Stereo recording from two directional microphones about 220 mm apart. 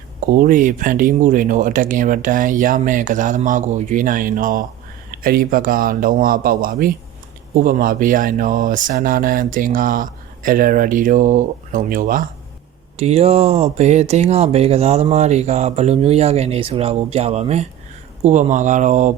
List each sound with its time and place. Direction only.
0.3 s speech: 35° right (ahead or behind)
13.0 s speech: 30° right (ahead or behind)